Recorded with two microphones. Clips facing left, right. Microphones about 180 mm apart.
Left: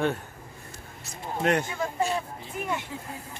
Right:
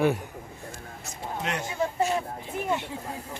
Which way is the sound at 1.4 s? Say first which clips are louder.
Left 9 dB; 50° left (ahead or behind).